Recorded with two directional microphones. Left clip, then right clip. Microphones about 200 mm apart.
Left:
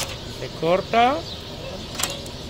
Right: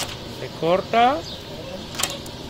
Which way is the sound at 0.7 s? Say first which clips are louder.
Right 1 dB; centre (ahead or behind).